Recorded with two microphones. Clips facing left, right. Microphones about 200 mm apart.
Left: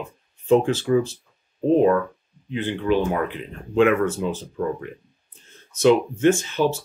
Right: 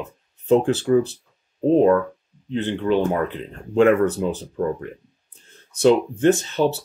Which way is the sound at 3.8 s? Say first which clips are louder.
Right 2 dB; 40° right (ahead or behind).